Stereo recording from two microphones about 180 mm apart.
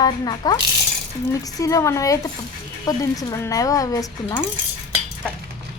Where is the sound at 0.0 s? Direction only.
20° left (ahead or behind).